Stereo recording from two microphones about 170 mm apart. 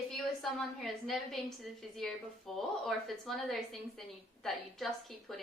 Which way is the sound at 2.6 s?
Centre (ahead or behind).